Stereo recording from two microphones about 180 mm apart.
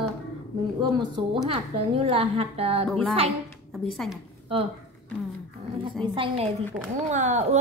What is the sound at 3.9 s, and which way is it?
Speech, centre (ahead or behind).